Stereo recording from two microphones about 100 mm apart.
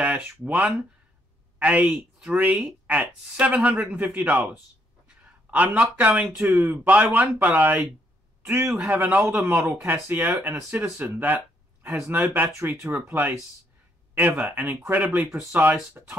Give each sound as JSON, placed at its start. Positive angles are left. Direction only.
{"t": 0.0, "sound": "speech", "side_deg": -15}